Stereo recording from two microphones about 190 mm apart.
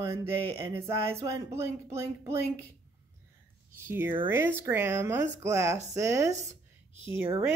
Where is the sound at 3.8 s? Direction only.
10° right (ahead or behind).